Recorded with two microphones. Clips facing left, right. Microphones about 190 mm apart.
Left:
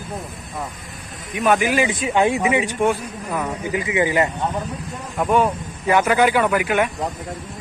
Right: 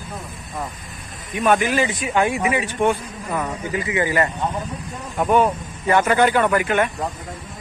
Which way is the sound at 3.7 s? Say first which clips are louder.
Left 2 dB; 15° left (ahead or behind).